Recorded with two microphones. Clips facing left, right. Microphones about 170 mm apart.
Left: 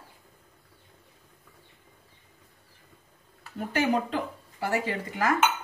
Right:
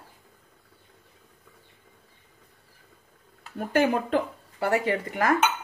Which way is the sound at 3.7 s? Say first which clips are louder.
Right 4 dB; 55° right (ahead or behind).